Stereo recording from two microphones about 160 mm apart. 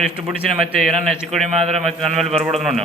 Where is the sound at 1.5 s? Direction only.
45° right (ahead or behind).